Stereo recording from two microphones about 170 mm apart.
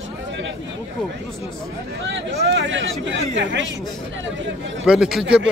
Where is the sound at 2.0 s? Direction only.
90° right.